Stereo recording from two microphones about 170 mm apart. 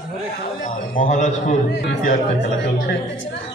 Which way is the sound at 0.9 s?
45° left (ahead or behind).